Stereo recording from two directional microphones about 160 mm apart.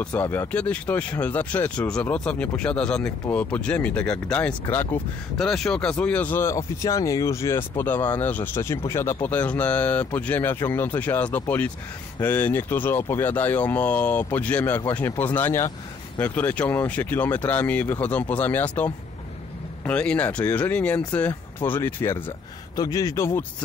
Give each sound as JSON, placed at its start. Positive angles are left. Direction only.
{"t": 0.0, "sound": "speech", "side_deg": 10}